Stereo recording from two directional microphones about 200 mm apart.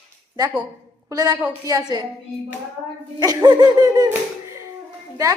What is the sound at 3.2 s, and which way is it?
Laughter, 20° right (ahead or behind).